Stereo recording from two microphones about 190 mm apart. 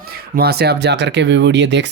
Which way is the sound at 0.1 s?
55° right (ahead or behind).